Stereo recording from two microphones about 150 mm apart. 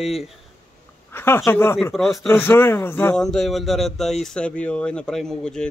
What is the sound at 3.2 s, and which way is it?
Speech, centre (ahead or behind).